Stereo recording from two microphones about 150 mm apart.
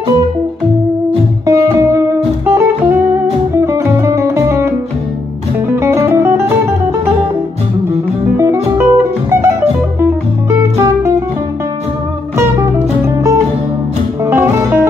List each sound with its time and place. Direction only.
1.4 s music: 20° right (ahead or behind)
5.8 s music: 15° right (ahead or behind)
8.7 s music: 15° right (ahead or behind)
10.5 s music: 15° right (ahead or behind)
13.0 s music: 20° right (ahead or behind)